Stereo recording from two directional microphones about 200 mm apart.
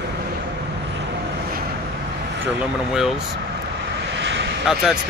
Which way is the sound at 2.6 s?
5° right (ahead or behind).